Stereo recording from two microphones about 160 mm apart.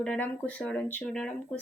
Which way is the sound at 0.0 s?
5° left (ahead or behind).